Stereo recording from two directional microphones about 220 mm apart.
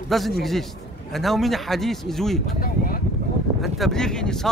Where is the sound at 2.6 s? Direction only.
40° left (ahead or behind).